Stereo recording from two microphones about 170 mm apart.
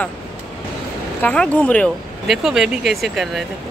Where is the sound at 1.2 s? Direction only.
10° left (ahead or behind).